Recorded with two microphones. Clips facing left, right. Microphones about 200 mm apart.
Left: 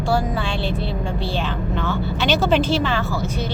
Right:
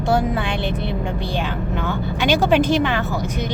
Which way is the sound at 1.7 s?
15° right (ahead or behind).